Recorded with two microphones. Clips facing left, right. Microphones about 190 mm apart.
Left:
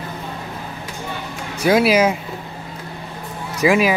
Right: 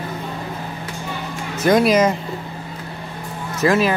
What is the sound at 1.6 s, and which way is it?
Speech, 5° left (ahead or behind).